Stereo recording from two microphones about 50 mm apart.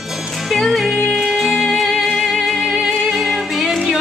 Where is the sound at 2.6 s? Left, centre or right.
Centre.